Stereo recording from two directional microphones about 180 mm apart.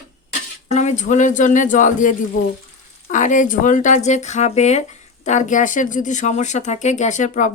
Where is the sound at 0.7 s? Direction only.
40° left (ahead or behind).